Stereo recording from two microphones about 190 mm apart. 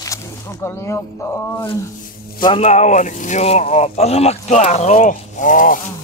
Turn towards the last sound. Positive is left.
turn(degrees=45)  # may be behind; listen again after turning